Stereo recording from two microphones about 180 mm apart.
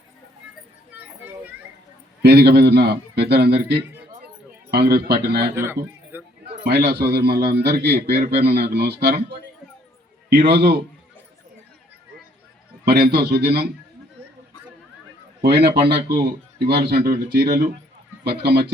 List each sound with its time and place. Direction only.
0.9 s a sound: 10° right (ahead or behind)
2.2 s a man's voice: 65° right (ahead or behind)
5.5 s music: 15° right (ahead or behind)
6.7 s a man's voice: 65° right (ahead or behind)
10.2 s a man's voice: 65° right (ahead or behind)
12.8 s a man's voice: 65° right (ahead or behind)
15.4 s a man's voice: 65° right (ahead or behind)